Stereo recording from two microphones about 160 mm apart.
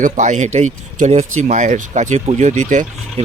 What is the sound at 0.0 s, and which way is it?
Speech, 50° right (ahead or behind).